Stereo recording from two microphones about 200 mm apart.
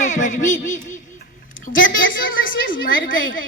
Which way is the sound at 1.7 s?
70° left (ahead or behind).